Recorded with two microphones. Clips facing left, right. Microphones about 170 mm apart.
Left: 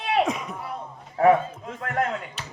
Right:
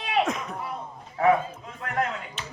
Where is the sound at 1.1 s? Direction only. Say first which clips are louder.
Left 3 dB; 40° left (ahead or behind).